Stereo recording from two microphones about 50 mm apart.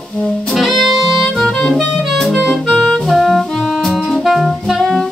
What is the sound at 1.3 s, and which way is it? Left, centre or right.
Music, centre.